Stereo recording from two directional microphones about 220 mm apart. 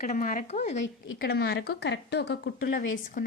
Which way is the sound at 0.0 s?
35° left (ahead or behind).